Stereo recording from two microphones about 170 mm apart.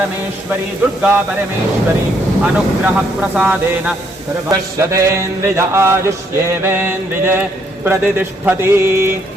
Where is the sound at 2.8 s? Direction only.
10° right (ahead or behind).